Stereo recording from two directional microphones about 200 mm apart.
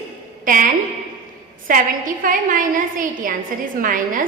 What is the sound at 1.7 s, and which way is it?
A woman's voice, 45° right (ahead or behind).